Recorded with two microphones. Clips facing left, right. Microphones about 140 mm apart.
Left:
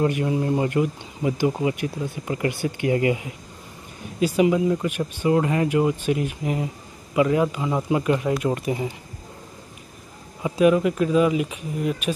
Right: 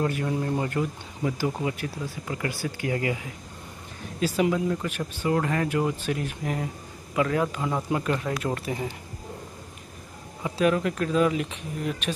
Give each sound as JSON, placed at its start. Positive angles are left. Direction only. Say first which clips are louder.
{"t": 0.0, "sound": "speech", "louder": "left 5 dB", "side_deg": 15}
{"t": 4.2, "sound": "speech", "louder": "left 5 dB", "side_deg": 10}
{"t": 10.4, "sound": "speech", "louder": "left 6 dB", "side_deg": 10}